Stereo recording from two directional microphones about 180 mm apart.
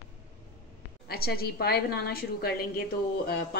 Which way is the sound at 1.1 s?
60° left (ahead or behind).